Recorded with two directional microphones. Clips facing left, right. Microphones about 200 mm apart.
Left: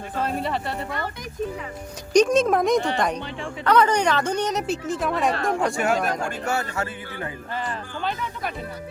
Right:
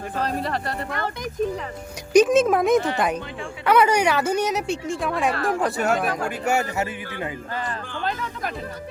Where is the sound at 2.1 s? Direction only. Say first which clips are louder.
Right 2 dB; 5° right (ahead or behind).